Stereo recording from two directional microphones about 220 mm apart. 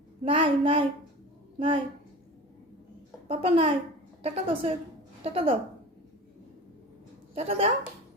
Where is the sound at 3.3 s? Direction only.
25° right (ahead or behind).